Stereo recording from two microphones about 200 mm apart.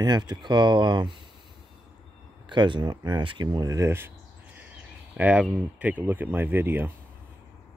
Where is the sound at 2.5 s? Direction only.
20° right (ahead or behind).